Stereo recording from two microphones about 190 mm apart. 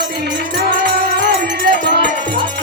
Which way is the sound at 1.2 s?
60° right (ahead or behind).